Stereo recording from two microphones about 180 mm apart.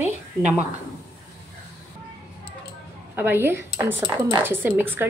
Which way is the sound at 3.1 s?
10° right (ahead or behind).